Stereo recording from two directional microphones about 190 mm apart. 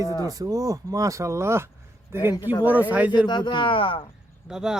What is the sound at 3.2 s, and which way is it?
Speech, 25° left (ahead or behind).